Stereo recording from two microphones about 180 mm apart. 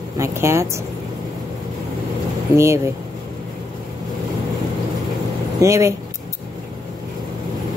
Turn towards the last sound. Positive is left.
turn(degrees=-15)  # may be behind; listen again after turning